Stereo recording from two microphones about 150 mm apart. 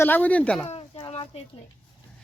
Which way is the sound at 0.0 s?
10° left (ahead or behind).